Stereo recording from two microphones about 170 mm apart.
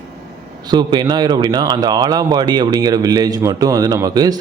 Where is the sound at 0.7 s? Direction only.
25° right (ahead or behind).